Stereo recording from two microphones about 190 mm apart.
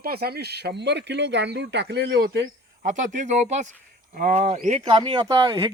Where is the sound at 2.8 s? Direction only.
40° right (ahead or behind).